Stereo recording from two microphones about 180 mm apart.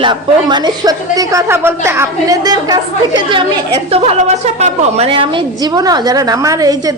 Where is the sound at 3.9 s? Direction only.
35° right (ahead or behind).